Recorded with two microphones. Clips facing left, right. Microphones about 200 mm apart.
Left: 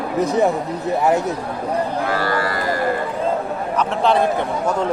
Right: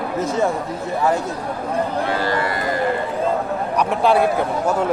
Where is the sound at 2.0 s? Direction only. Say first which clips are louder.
Even; 20° right (ahead or behind).